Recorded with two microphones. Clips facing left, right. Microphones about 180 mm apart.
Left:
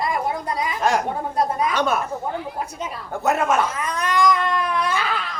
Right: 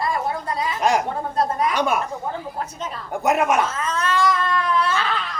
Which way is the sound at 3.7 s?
15° left (ahead or behind).